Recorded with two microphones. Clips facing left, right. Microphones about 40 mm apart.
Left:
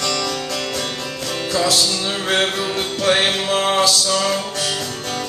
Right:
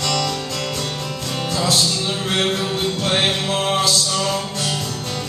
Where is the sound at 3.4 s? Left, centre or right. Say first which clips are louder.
Left 2 dB; left.